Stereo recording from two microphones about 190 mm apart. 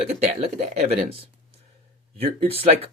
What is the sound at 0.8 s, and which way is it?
Speech, 35° right (ahead or behind).